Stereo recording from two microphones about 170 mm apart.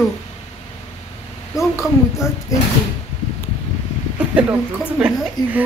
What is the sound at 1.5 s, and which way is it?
Speech, 5° right (ahead or behind).